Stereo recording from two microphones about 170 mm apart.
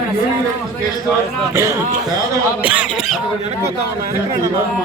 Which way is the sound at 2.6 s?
5° right (ahead or behind).